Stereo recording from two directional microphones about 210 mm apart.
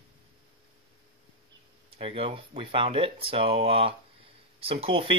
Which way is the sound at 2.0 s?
25° right (ahead or behind).